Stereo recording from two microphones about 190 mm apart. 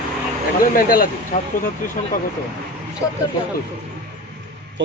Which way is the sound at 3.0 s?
15° left (ahead or behind).